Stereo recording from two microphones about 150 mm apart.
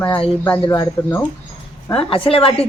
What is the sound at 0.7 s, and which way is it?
Speech, 20° left (ahead or behind).